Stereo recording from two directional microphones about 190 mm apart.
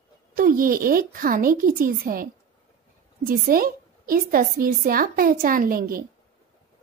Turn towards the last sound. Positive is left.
turn(degrees=-50)  # may be behind; listen again after turning